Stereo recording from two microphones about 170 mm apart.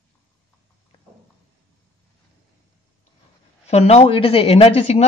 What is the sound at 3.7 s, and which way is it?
Speech, 40° left (ahead or behind).